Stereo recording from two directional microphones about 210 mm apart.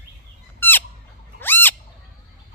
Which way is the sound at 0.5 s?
10° left (ahead or behind).